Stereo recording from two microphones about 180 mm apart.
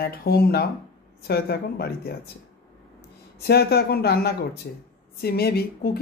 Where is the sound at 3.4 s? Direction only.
65° left (ahead or behind).